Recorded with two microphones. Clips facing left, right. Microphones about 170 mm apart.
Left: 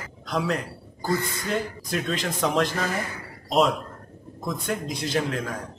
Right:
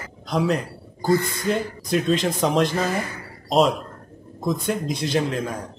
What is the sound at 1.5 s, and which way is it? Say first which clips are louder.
Speech: right 6 dB; 20° right (ahead or behind).